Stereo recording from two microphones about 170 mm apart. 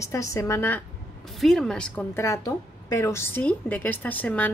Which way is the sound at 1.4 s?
Centre (ahead or behind).